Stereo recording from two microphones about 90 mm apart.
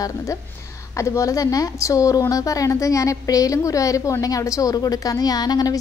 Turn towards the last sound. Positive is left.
turn(degrees=45)  # may be behind; listen again after turning